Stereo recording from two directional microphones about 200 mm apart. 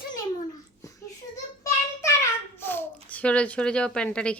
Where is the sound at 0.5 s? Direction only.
15° left (ahead or behind).